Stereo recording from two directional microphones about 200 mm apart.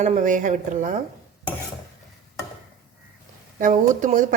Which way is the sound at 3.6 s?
40° right (ahead or behind).